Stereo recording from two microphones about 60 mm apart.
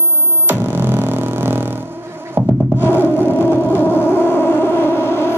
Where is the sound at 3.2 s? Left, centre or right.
Left.